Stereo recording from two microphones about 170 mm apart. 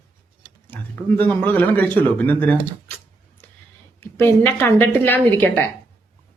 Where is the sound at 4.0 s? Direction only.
15° left (ahead or behind).